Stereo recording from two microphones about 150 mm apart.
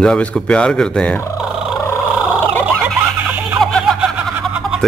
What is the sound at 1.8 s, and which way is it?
Purr, 15° left (ahead or behind).